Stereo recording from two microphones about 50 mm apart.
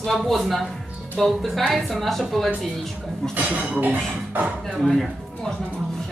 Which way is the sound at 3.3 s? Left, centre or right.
Right.